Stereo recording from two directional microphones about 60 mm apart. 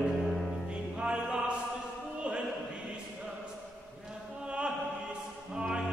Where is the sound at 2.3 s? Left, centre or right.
Right.